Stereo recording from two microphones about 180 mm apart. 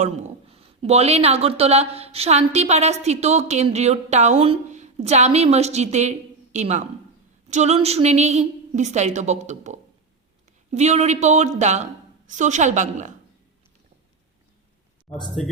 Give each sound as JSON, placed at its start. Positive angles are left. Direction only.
{"t": 0.0, "sound": "speech", "side_deg": -35}
{"t": 15.4, "sound": "speech", "side_deg": 0}